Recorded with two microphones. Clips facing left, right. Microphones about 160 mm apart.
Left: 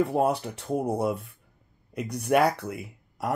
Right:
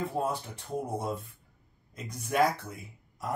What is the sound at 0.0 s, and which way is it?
Speech, 75° left (ahead or behind).